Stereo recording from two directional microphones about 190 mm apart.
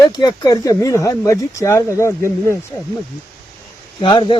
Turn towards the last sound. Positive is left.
turn(degrees=25)  # may be behind; listen again after turning